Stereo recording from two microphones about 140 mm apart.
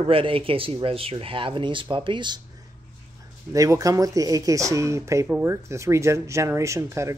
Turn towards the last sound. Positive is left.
turn(degrees=-20)  # may be behind; listen again after turning